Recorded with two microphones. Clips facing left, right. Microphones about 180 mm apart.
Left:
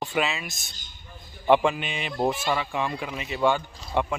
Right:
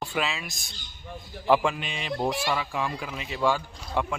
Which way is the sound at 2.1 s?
15° left (ahead or behind).